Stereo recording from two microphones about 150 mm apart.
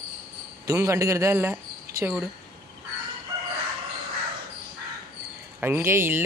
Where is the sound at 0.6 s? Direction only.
20° right (ahead or behind).